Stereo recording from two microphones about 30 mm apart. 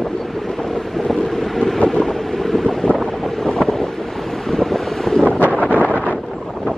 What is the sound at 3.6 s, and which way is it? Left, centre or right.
Wind noise, centre.